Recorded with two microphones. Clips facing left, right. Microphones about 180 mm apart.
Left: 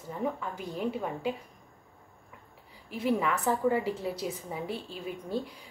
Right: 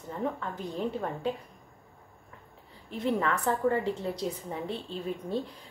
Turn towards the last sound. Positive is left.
turn(degrees=5)  # may be behind; listen again after turning